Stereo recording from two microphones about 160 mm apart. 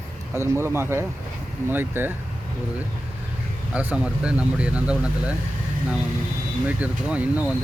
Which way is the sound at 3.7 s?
10° right (ahead or behind).